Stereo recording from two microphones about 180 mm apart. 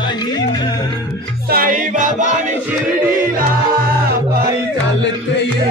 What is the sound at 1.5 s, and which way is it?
Music, 50° right (ahead or behind).